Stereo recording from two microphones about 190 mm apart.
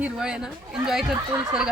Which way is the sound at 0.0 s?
5° right (ahead or behind).